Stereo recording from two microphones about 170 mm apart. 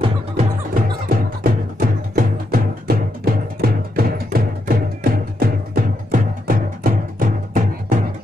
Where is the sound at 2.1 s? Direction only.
60° right (ahead or behind).